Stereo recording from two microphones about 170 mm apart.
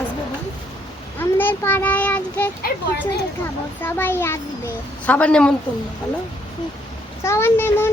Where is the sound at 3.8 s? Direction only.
10° left (ahead or behind).